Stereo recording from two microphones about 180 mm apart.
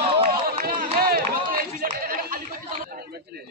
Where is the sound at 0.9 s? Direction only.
55° right (ahead or behind).